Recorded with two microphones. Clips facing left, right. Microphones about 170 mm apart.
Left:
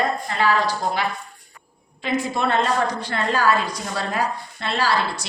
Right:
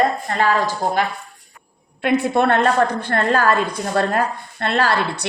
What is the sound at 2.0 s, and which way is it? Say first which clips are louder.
A woman's voice: right 6 dB; 65° right (ahead or behind).